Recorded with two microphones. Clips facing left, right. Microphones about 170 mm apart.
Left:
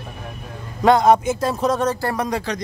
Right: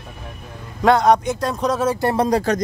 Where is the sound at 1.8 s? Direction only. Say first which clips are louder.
Right 2 dB; 15° right (ahead or behind).